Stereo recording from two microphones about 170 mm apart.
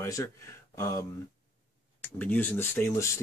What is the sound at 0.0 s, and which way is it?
Speech, 20° left (ahead or behind).